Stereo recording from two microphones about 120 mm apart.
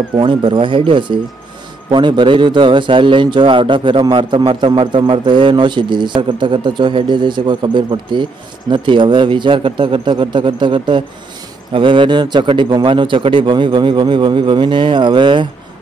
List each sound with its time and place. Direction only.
0.2 s a man's voice: 45° right (ahead or behind)